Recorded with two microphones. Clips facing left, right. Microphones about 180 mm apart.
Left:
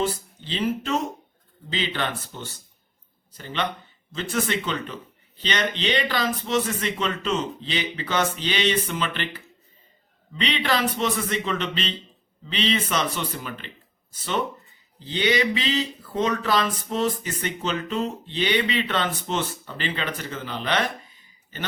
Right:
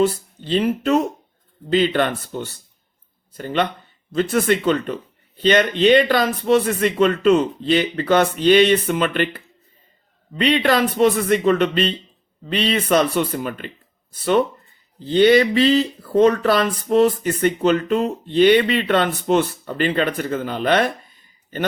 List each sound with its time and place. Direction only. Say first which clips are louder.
0.4 s a man's voice: right 7 dB; 55° right (ahead or behind)